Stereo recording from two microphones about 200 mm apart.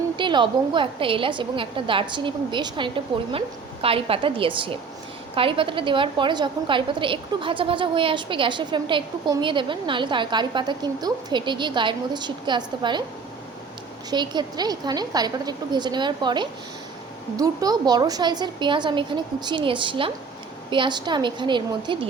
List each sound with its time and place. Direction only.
0.2 s a woman's voice: 25° right (ahead or behind)
14.1 s a woman's voice: 20° right (ahead or behind)